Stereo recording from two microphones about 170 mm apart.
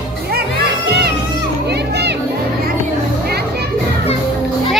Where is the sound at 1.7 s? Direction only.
75° right (ahead or behind).